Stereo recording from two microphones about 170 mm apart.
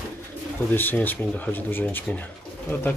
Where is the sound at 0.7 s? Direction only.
10° left (ahead or behind).